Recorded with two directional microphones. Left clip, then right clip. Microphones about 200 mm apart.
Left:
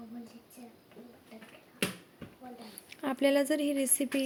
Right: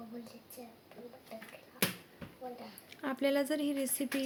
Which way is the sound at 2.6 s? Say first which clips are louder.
Left 8 dB; 15° left (ahead or behind).